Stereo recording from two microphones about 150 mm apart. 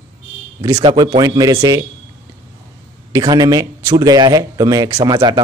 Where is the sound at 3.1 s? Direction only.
25° right (ahead or behind).